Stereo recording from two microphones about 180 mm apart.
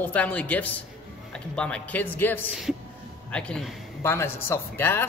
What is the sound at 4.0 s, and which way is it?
A man's voice, 15° left (ahead or behind).